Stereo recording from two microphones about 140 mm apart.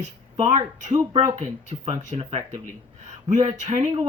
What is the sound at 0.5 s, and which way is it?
Speech, 60° right (ahead or behind).